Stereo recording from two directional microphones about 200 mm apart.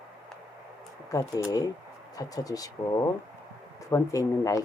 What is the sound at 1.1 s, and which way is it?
Speech, 20° left (ahead or behind).